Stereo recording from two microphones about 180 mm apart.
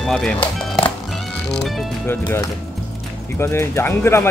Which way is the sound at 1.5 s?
Centre (ahead or behind).